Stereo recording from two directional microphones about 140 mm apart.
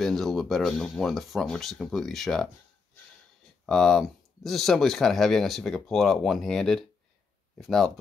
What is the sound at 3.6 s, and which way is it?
Speech, 5° left (ahead or behind).